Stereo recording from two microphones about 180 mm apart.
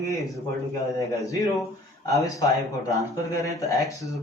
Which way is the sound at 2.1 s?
20° left (ahead or behind).